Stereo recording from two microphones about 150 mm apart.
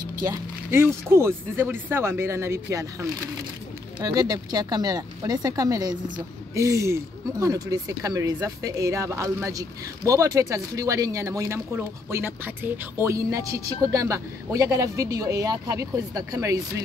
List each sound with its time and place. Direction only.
0.2 s speech: 20° right (ahead or behind)